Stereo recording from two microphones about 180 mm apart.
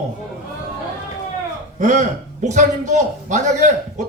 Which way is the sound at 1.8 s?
45° right (ahead or behind).